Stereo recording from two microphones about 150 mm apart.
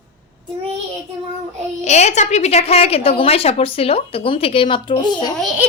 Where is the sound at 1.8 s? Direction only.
50° left (ahead or behind); by 5.3 s 30° left (ahead or behind).